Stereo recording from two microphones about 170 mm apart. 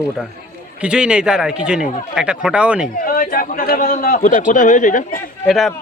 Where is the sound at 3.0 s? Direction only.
55° left (ahead or behind).